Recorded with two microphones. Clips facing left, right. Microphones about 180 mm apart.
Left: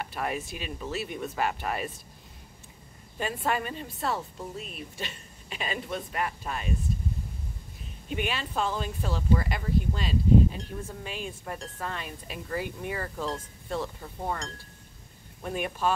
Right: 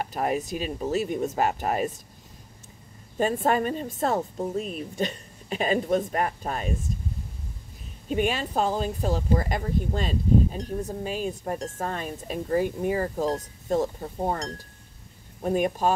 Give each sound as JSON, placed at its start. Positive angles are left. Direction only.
{"t": 0.0, "sound": "speech", "side_deg": -40}
{"t": 3.2, "sound": "speech", "side_deg": -45}
{"t": 8.1, "sound": "speech", "side_deg": -45}